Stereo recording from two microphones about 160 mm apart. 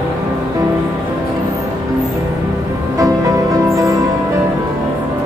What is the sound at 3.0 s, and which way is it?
Music, 20° right (ahead or behind).